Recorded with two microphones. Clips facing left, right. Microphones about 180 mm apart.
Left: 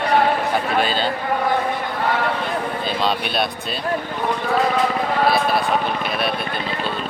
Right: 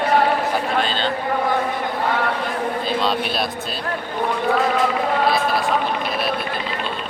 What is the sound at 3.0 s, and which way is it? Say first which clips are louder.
Speech: even; centre (ahead or behind).